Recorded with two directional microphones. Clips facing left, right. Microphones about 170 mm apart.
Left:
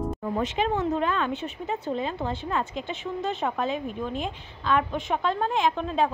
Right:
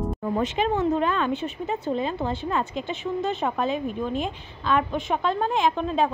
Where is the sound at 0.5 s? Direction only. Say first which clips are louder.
Right 3 dB; 40° right (ahead or behind).